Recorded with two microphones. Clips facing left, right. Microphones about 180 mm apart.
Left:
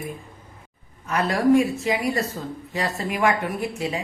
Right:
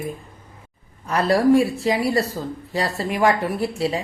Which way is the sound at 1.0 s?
35° right (ahead or behind).